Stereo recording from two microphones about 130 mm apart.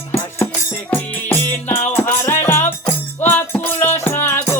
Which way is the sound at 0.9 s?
15° left (ahead or behind).